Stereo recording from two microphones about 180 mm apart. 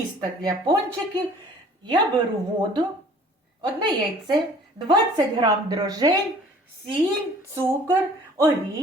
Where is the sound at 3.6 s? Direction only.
25° right (ahead or behind).